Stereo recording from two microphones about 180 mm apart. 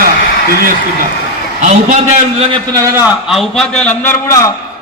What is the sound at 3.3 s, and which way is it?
A man's voice, centre (ahead or behind).